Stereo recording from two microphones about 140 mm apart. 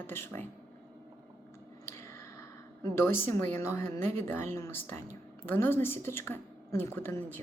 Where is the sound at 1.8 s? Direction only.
20° left (ahead or behind).